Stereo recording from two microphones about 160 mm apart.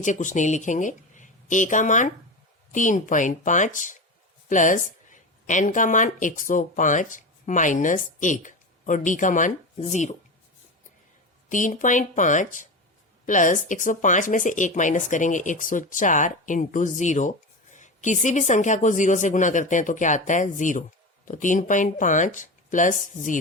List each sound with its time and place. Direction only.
0.0 s speech: 50° left (ahead or behind)
11.4 s speech: 55° left (ahead or behind)